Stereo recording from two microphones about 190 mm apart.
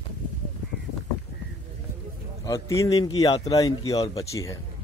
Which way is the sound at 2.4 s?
15° left (ahead or behind).